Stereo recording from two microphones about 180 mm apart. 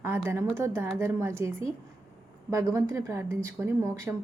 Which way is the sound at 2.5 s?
15° right (ahead or behind).